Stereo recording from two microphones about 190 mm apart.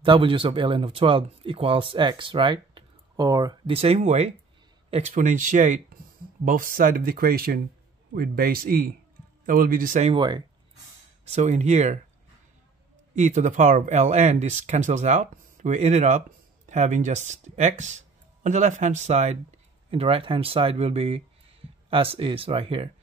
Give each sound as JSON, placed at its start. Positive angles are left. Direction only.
{"t": 0.0, "sound": "speech", "side_deg": -25}
{"t": 10.1, "sound": "speech", "side_deg": -25}
{"t": 11.2, "sound": "speech", "side_deg": -35}
{"t": 13.1, "sound": "speech", "side_deg": -40}